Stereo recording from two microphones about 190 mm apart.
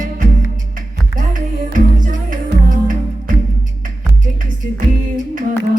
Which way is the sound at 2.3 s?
45° right (ahead or behind).